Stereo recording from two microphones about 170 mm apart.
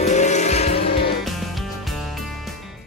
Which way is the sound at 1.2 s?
Centre (ahead or behind).